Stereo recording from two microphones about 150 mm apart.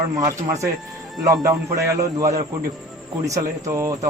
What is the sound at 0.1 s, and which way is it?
A man's voice, 20° right (ahead or behind).